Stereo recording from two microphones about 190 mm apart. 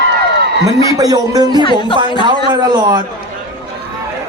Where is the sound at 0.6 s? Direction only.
20° right (ahead or behind).